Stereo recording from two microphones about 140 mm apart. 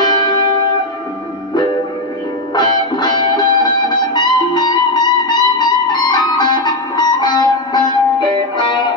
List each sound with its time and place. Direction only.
0.0 s music: 30° left (ahead or behind)
2.5 s music: 30° left (ahead or behind)